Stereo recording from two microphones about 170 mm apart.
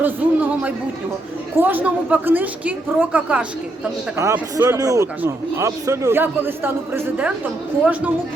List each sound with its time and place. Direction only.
0.0 s a man's voice: 10° right (ahead or behind)